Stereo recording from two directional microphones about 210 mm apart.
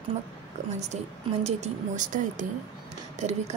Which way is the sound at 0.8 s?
30° right (ahead or behind).